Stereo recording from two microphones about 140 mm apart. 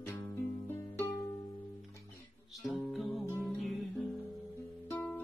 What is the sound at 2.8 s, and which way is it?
Music, centre (ahead or behind).